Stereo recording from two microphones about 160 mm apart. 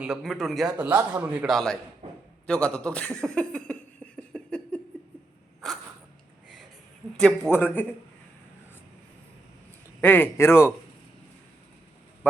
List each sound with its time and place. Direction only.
0.0 s a man's voice: centre (ahead or behind)
3.2 s a sound: 5° left (ahead or behind)
7.2 s a man's voice: 5° left (ahead or behind)
10.0 s speech: 15° left (ahead or behind)